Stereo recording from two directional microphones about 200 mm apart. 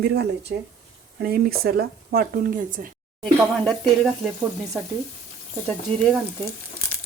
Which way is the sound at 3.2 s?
5° left (ahead or behind).